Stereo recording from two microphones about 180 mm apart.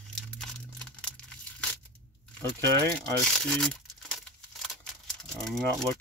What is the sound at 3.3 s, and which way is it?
Crumpling, 5° left (ahead or behind).